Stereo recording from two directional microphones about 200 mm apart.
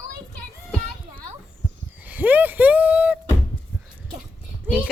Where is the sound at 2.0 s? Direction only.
10° right (ahead or behind).